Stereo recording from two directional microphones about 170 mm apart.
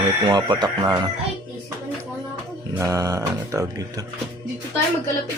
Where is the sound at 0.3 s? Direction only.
25° right (ahead or behind).